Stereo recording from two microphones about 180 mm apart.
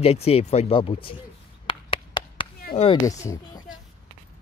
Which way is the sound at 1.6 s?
25° left (ahead or behind).